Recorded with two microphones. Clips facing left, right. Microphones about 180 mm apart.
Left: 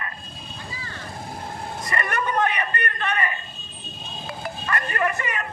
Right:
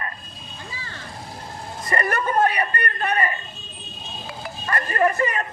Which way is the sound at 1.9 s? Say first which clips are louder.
Right 3 dB; 40° right (ahead or behind).